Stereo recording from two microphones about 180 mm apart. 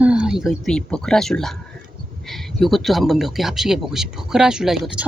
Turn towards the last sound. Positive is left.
turn(degrees=-5)  # may be behind; listen again after turning